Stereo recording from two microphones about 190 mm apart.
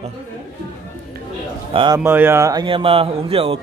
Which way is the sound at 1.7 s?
30° right (ahead or behind).